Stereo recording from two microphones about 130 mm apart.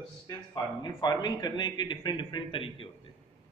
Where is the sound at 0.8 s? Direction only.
35° left (ahead or behind).